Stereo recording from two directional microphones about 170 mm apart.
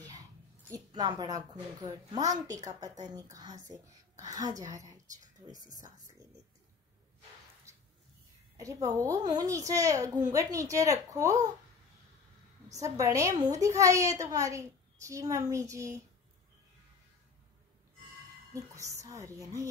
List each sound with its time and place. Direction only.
0.7 s a woman's voice: 25° right (ahead or behind)
5.7 s speech: 45° right (ahead or behind)
8.5 s a woman's voice: 20° right (ahead or behind)
12.8 s a woman's voice: 20° right (ahead or behind)
18.5 s a woman's voice: 20° right (ahead or behind)